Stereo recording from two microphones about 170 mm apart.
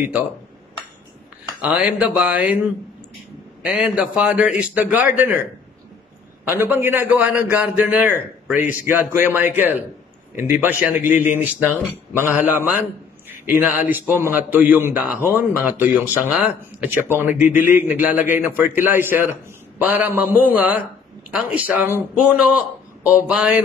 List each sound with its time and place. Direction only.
1.6 s a man's voice: 5° right (ahead or behind)
3.6 s a man's voice: 5° right (ahead or behind)
6.4 s a man's voice: 10° right (ahead or behind)
8.5 s a man's voice: 50° left (ahead or behind)
9.1 s a man's voice: 10° right (ahead or behind)